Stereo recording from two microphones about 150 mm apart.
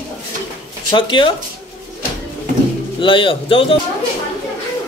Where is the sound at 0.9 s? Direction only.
35° left (ahead or behind).